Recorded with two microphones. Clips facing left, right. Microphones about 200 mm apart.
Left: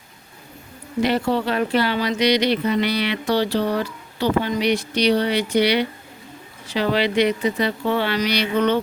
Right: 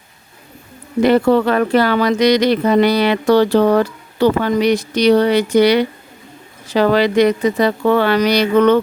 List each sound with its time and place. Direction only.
1.0 s speech: 50° right (ahead or behind)